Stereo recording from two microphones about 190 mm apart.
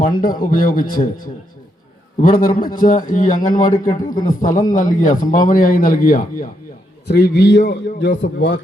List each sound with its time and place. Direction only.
0.2 s speech: 45° left (ahead or behind)
3.7 s a man's voice: 20° left (ahead or behind)
4.4 s speech: 45° left (ahead or behind)
7.1 s a man's voice: 60° left (ahead or behind)